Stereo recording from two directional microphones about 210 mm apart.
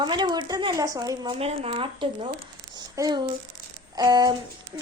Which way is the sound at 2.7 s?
20° right (ahead or behind).